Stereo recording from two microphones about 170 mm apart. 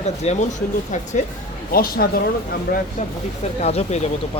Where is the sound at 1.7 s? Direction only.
60° left (ahead or behind).